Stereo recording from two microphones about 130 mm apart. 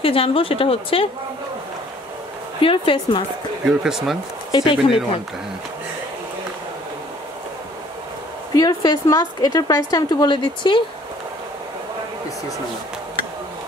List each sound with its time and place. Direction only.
0.0 s speech: 45° left (ahead or behind)
2.6 s a woman's voice: 40° left (ahead or behind)
3.6 s speech: 5° right (ahead or behind)
4.5 s speech: 35° left (ahead or behind)
8.5 s a woman's voice: 30° left (ahead or behind)